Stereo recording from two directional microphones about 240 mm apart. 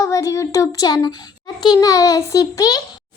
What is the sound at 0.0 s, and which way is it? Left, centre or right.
A child's voice, centre.